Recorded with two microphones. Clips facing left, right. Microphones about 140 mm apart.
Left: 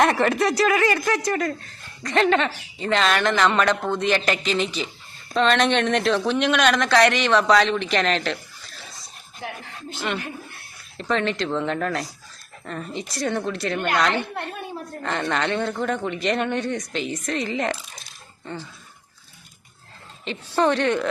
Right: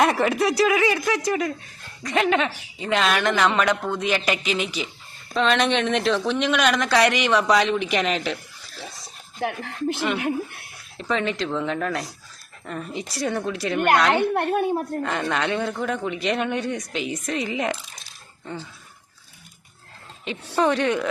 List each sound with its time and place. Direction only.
0.0 s speech: 5° right (ahead or behind)
9.4 s a woman's voice: 70° right (ahead or behind)
10.9 s speech: 5° right (ahead or behind)
14.1 s a woman's voice: 55° right (ahead or behind)
15.0 s speech: 5° right (ahead or behind)
20.6 s speech: centre (ahead or behind)